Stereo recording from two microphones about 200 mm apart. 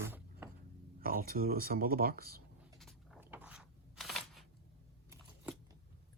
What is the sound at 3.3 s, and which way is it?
Crunch, 5° right (ahead or behind).